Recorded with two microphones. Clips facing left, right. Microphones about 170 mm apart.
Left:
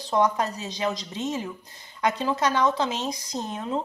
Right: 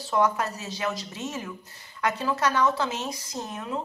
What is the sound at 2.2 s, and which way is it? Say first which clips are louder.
A woman's voice: even; 15° left (ahead or behind).